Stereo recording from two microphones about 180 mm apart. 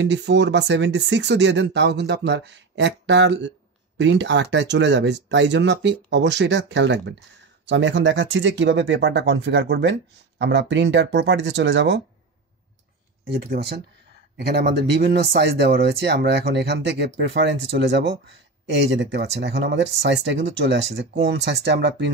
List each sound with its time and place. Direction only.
0.0 s speech: 75° right (ahead or behind)
13.3 s speech: 65° right (ahead or behind)
18.2 s speech: 90° right; by 22.1 s 75° right (ahead or behind)